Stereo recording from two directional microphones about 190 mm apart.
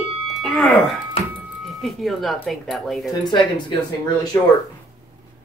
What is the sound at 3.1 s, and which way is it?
Speech, 25° left (ahead or behind).